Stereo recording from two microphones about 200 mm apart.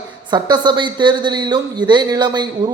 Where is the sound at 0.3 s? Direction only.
20° right (ahead or behind).